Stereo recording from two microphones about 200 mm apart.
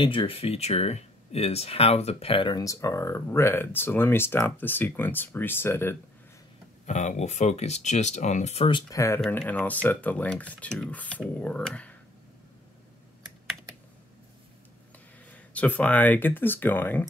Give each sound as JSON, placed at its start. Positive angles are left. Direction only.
{"t": 0.0, "sound": "speech", "side_deg": 25}
{"t": 6.9, "sound": "speech", "side_deg": 35}
{"t": 15.3, "sound": "speech", "side_deg": 5}